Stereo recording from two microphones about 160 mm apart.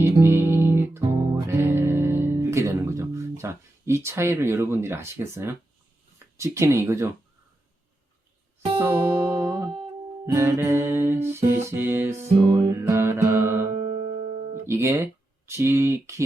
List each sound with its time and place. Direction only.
0.0 s music: 15° right (ahead or behind)
6.1 s speech: 20° right (ahead or behind)
8.8 s music: 10° right (ahead or behind)
9.5 s music: 30° right (ahead or behind)
10.2 s music: 15° right (ahead or behind)
13.7 s music: 45° right (ahead or behind)
14.5 s guitar: 15° right (ahead or behind)
15.4 s music: 15° right (ahead or behind)